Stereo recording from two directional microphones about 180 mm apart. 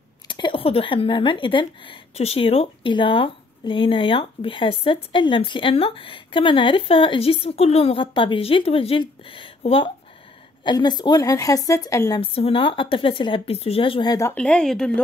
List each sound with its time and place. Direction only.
0.3 s speech: 25° left (ahead or behind)
12.2 s speech: 30° left (ahead or behind)
14.3 s speech: 5° left (ahead or behind)